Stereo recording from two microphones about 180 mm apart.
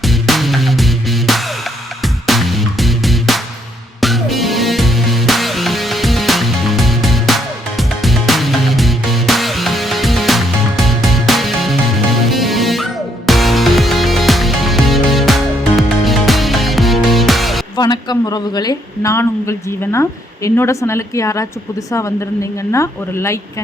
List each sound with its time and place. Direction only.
0.0 s music: centre (ahead or behind)
17.7 s speech: 25° left (ahead or behind)
22.7 s speech: 15° left (ahead or behind)